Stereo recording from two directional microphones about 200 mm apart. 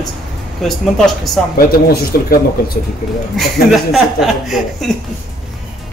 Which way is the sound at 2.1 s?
50° left (ahead or behind).